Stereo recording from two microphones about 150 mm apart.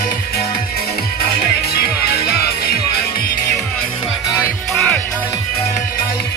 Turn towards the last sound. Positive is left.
turn(degrees=10)  # may be behind; listen again after turning